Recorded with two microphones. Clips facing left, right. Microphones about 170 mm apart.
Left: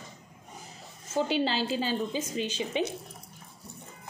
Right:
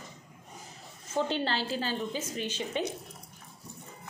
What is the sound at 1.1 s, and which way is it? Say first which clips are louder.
A woman's voice: left 3 dB; 10° left (ahead or behind).